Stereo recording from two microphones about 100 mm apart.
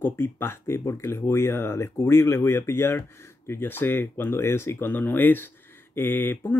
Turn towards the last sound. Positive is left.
turn(degrees=20)  # may be behind; listen again after turning